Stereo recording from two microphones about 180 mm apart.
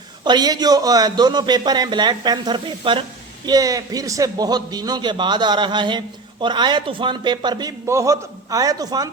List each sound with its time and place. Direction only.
0.3 s a man's voice: 20° right (ahead or behind)